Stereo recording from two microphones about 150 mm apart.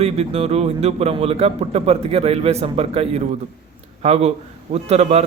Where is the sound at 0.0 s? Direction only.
40° right (ahead or behind).